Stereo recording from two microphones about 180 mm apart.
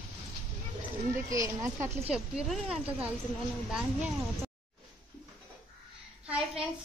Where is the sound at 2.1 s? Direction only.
5° right (ahead or behind).